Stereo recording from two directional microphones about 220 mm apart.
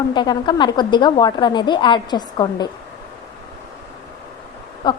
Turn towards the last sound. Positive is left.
turn(degrees=20)  # may be behind; listen again after turning